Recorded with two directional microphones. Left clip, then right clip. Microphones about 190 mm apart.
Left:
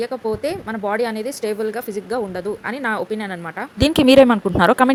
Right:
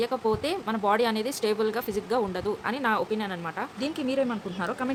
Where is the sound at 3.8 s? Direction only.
50° left (ahead or behind).